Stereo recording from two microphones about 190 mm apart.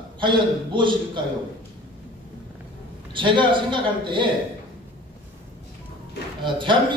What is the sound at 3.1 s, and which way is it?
A man's voice, 25° right (ahead or behind).